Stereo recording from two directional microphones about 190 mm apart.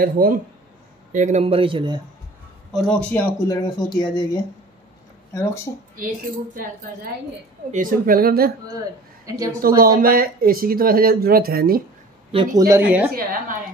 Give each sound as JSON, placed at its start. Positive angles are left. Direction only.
{"t": 0.0, "sound": "a man's voice", "side_deg": -50}
{"t": 2.7, "sound": "speech", "side_deg": 5}
{"t": 5.9, "sound": "speech", "side_deg": -45}
{"t": 8.6, "sound": "speech", "side_deg": -15}
{"t": 9.8, "sound": "speech", "side_deg": -50}
{"t": 12.3, "sound": "a man's voice", "side_deg": -25}
{"t": 12.6, "sound": "speech", "side_deg": -10}
{"t": 13.1, "sound": "speech", "side_deg": -45}